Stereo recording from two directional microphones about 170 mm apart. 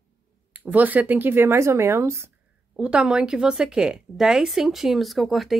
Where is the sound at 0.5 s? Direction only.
10° right (ahead or behind).